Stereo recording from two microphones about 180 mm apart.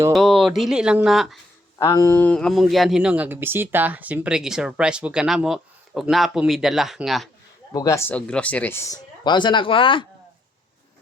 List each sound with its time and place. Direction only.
0.1 s speech: centre (ahead or behind)
1.8 s speech: 15° left (ahead or behind); by 7.3 s centre (ahead or behind)
7.7 s speech: 20° left (ahead or behind)
9.2 s speech: 25° left (ahead or behind)